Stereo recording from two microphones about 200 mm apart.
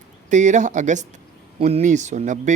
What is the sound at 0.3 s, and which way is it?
Speech, 35° right (ahead or behind).